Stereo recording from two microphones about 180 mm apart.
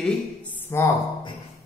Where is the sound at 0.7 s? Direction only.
15° left (ahead or behind).